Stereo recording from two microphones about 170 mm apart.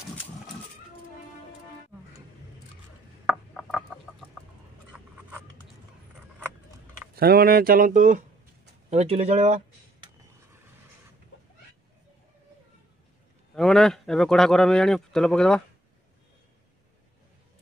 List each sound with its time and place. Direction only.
3.3 s a sound: centre (ahead or behind)
7.2 s speech: 65° right (ahead or behind); by 9.6 s 40° right (ahead or behind)
13.6 s speech: 5° left (ahead or behind)